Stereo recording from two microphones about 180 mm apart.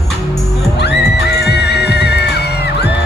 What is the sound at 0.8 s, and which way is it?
Music, 65° left (ahead or behind).